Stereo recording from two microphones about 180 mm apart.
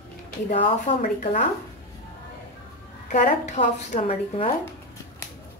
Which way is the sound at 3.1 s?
45° left (ahead or behind).